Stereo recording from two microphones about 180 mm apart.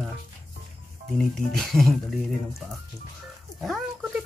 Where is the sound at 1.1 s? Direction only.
5° left (ahead or behind).